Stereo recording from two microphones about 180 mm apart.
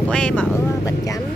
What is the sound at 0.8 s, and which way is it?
Speech, 20° left (ahead or behind).